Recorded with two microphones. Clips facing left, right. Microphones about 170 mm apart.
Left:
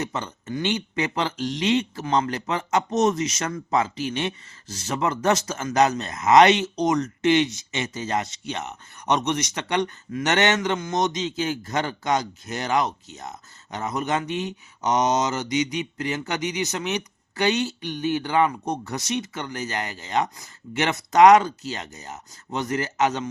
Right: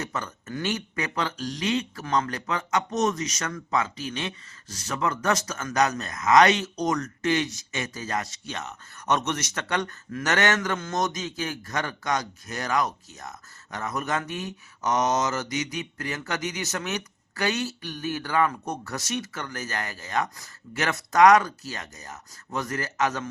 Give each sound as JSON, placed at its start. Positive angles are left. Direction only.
{"t": 0.0, "sound": "speech", "side_deg": 20}